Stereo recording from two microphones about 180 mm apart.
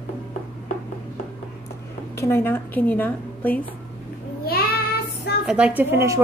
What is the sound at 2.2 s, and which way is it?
A woman's voice, 15° left (ahead or behind).